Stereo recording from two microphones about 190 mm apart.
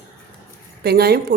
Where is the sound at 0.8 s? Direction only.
55° right (ahead or behind).